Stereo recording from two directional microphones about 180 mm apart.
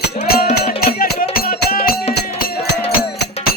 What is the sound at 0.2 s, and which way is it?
Music, 55° left (ahead or behind).